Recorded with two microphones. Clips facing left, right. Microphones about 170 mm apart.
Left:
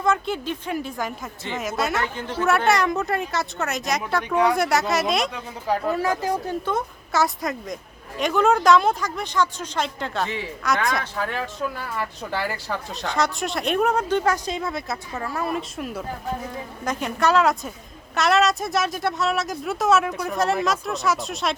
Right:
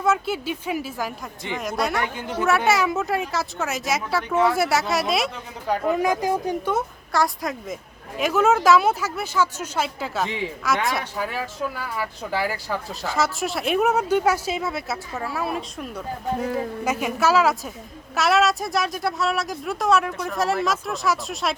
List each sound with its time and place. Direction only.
0.0 s speech: 5° right (ahead or behind)
2.1 s speech: 10° right (ahead or behind)
5.8 s speech: 15° right (ahead or behind)
7.1 s speech: centre (ahead or behind)
10.2 s speech: 15° right (ahead or behind)
10.8 s speech: 5° right (ahead or behind)
16.8 s speech: 5° right (ahead or behind)